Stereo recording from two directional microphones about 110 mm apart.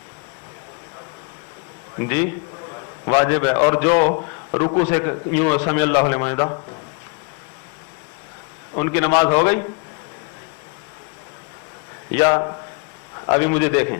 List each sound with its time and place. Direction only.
2.0 s a man's voice: 25° left (ahead or behind)
8.7 s speech: 25° left (ahead or behind)
12.1 s speech: 30° left (ahead or behind)